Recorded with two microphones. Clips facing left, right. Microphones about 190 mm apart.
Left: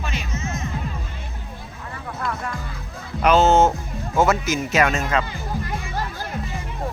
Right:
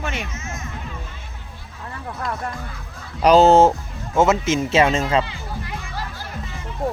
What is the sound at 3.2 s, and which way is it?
Speech, 35° right (ahead or behind).